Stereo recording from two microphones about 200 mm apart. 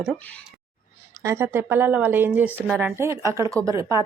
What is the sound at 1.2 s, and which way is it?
Speech, 15° right (ahead or behind).